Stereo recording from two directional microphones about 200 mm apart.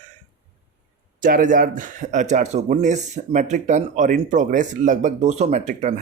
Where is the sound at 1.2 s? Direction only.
45° right (ahead or behind).